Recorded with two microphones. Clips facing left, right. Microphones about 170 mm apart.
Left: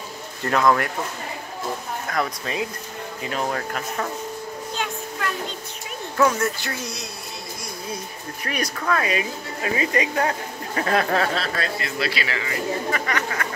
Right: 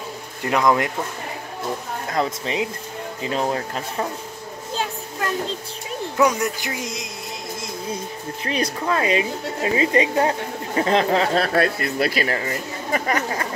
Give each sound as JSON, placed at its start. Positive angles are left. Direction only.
{"t": 0.5, "sound": "a man's voice", "side_deg": -15}
{"t": 2.0, "sound": "speech", "side_deg": -25}
{"t": 4.7, "sound": "a sound", "side_deg": -30}
{"t": 6.1, "sound": "a man's voice", "side_deg": -15}
{"t": 8.5, "sound": "speech", "side_deg": -25}
{"t": 11.3, "sound": "speech", "side_deg": -55}